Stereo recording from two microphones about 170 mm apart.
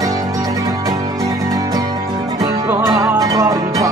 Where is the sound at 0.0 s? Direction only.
20° right (ahead or behind).